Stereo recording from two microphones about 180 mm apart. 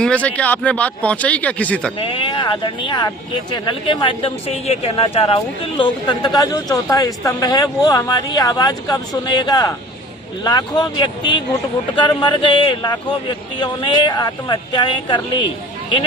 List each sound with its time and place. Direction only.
0.0 s speech: 5° left (ahead or behind)
2.0 s speech: 30° left (ahead or behind)